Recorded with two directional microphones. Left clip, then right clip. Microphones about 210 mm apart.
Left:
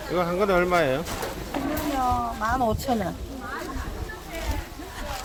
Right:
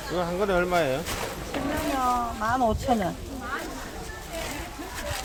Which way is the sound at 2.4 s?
30° left (ahead or behind).